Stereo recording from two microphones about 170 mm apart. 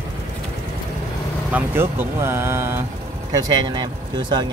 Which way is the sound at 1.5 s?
15° right (ahead or behind).